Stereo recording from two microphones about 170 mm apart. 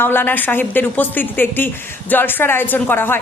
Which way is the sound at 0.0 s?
10° left (ahead or behind).